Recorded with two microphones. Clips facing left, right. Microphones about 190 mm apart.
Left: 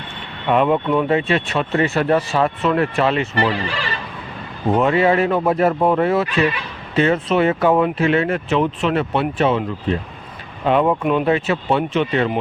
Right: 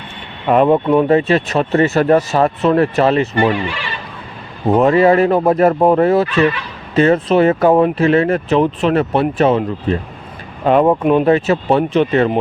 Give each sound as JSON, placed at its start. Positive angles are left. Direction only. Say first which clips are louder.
{"t": 0.4, "sound": "speech", "louder": "right 5 dB", "side_deg": -40}
{"t": 3.5, "sound": "speech", "louder": "right 3 dB", "side_deg": 40}
{"t": 4.7, "sound": "speech", "louder": "right 5 dB", "side_deg": -40}
{"t": 10.7, "sound": "speech", "louder": "right 5 dB", "side_deg": -45}